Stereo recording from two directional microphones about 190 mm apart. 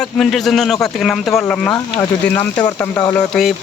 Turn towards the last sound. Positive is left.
turn(degrees=0)  # may be behind; listen again after turning